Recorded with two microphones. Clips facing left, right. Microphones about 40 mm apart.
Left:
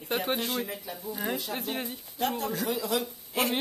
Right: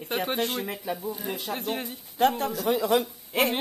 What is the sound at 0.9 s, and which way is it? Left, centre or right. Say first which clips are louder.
Speech: right 8 dB; right.